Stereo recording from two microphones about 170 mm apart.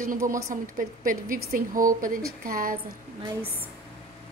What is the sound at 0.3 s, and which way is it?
Speech, 50° right (ahead or behind).